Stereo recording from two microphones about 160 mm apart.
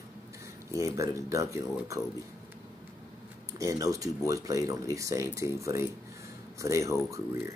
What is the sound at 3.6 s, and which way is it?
Speech, 20° right (ahead or behind).